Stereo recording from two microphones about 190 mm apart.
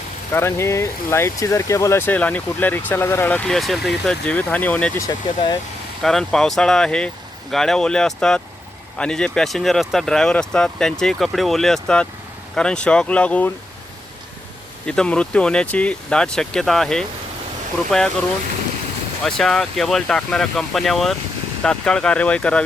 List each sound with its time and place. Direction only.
0.3 s speech: 15° left (ahead or behind)
5.0 s speech: 20° left (ahead or behind)
6.0 s speech: centre (ahead or behind)
14.8 s speech: 5° left (ahead or behind)
19.2 s speech: centre (ahead or behind)